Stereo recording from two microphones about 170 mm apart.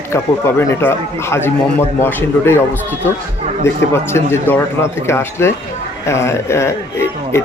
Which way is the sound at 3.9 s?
15° left (ahead or behind).